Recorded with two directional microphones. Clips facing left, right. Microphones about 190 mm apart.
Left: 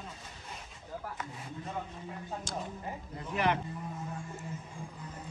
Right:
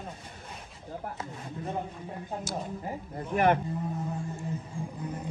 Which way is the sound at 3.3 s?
50° right (ahead or behind).